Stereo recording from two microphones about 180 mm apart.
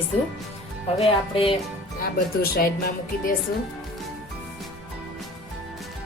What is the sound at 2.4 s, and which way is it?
Music, 60° left (ahead or behind).